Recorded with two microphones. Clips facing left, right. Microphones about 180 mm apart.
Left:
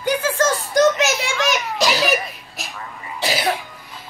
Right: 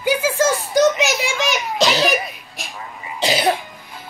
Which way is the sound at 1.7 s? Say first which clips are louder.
Right 4 dB; 25° right (ahead or behind).